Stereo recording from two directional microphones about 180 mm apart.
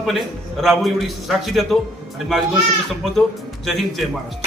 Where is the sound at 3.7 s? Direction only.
Centre (ahead or behind).